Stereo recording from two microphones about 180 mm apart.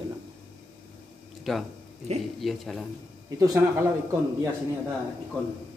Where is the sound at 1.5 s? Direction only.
Centre (ahead or behind).